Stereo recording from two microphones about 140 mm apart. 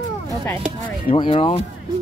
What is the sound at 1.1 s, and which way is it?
Speech, 40° left (ahead or behind).